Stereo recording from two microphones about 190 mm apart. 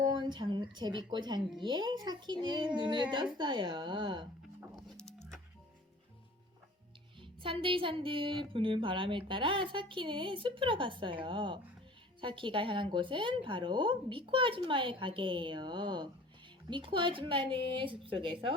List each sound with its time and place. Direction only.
0.0 s speech: 25° right (ahead or behind)
4.7 s music: centre (ahead or behind)
7.2 s speech: 25° right (ahead or behind)